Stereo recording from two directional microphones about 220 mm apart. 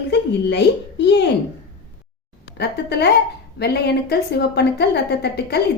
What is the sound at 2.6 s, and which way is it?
A woman's voice, 50° left (ahead or behind).